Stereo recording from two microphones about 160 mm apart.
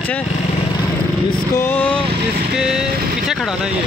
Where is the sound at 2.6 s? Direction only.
5° right (ahead or behind).